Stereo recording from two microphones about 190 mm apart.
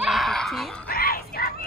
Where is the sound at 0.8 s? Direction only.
55° left (ahead or behind).